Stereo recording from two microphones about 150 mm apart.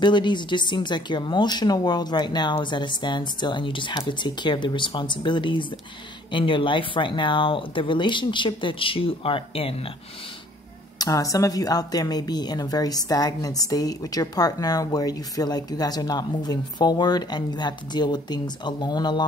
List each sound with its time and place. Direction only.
0.0 s a woman's voice: 30° left (ahead or behind)
11.0 s a woman's voice: 25° left (ahead or behind)